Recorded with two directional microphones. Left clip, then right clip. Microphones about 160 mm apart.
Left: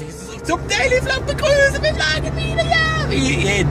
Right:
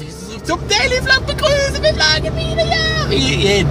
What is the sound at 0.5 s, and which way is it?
Speech, 10° right (ahead or behind).